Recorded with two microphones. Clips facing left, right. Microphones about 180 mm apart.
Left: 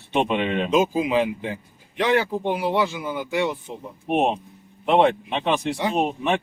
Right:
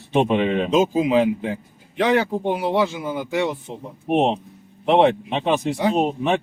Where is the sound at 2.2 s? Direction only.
40° right (ahead or behind).